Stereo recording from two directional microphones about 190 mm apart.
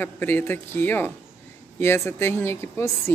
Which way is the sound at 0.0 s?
10° left (ahead or behind).